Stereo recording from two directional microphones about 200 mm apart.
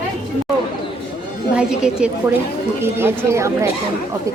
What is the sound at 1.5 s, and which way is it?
Speech, 5° right (ahead or behind).